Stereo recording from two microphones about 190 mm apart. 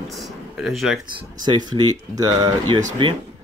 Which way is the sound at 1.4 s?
20° right (ahead or behind).